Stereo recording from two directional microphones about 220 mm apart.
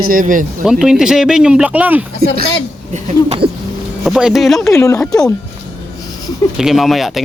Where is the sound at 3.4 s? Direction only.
50° right (ahead or behind).